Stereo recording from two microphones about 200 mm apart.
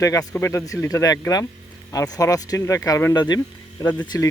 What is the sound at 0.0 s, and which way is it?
Speech, 15° left (ahead or behind).